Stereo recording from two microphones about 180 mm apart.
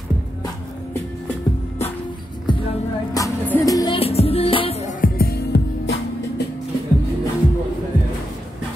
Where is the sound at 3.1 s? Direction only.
15° left (ahead or behind).